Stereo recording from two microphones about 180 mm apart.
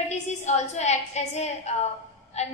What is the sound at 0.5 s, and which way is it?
A woman's voice, 40° left (ahead or behind).